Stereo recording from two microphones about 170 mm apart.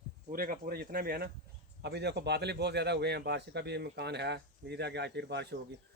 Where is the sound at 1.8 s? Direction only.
80° right.